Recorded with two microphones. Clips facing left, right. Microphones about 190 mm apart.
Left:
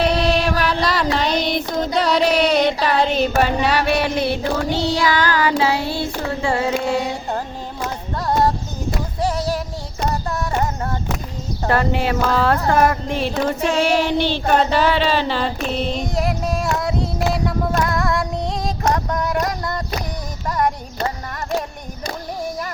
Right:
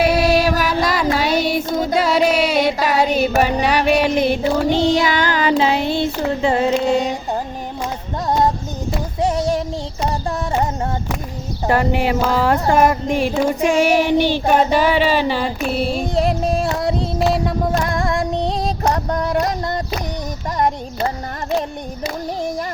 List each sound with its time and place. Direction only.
0.0 s music: 5° right (ahead or behind)
0.9 s a sound: 5° right (ahead or behind)
2.0 s music: 5° right (ahead or behind)
2.8 s a sound: 10° right (ahead or behind)
9.2 s female singing: 25° right (ahead or behind)
10.2 s a sound: 25° right (ahead or behind)
11.6 s child singing: 15° right (ahead or behind)
16.1 s music: 30° right (ahead or behind)
17.3 s female singing: 25° right (ahead or behind)